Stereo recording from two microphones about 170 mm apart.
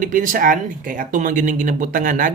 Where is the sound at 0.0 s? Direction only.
50° right (ahead or behind).